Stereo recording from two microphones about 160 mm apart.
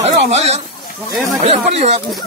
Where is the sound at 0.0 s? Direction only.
40° right (ahead or behind).